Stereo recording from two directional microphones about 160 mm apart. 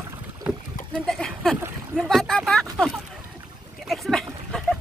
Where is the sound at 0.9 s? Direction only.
5° left (ahead or behind).